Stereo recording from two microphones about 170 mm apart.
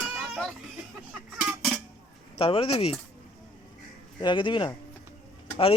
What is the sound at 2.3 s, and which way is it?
Speech, 30° left (ahead or behind).